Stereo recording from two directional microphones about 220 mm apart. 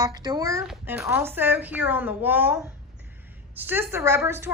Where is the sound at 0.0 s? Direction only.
20° right (ahead or behind).